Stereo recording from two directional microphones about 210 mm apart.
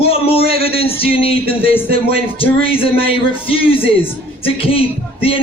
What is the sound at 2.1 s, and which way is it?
A man's voice, 25° left (ahead or behind).